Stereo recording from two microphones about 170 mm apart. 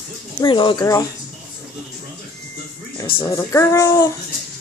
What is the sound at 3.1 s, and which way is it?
Speech, 20° left (ahead or behind).